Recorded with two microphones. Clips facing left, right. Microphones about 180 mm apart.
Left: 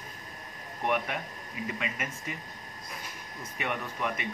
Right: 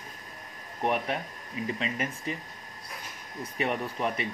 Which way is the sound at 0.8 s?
30° right (ahead or behind).